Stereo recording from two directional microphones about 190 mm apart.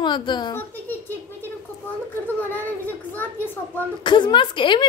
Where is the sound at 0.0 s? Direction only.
25° left (ahead or behind).